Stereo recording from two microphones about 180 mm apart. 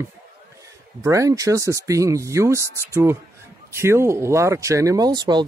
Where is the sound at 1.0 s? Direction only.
15° right (ahead or behind).